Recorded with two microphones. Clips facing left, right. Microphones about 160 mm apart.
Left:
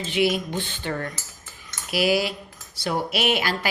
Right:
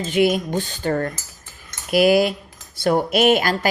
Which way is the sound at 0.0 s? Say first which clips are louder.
Right 5 dB; 45° right (ahead or behind).